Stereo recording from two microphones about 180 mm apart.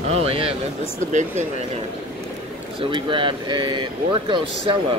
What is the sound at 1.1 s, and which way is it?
Speech, 45° right (ahead or behind).